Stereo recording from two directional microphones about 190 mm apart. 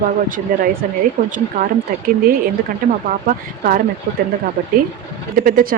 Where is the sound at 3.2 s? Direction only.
45° right (ahead or behind).